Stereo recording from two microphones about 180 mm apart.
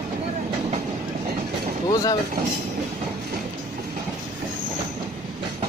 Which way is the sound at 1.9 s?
20° left (ahead or behind).